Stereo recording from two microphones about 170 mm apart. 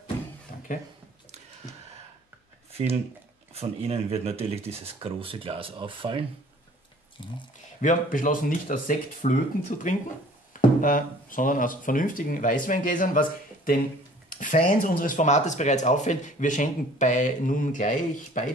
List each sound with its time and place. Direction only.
0.7 s speech: 55° left (ahead or behind)
3.5 s speech: 35° right (ahead or behind)
7.2 s speech: 30° left (ahead or behind)
7.8 s speech: 50° left (ahead or behind)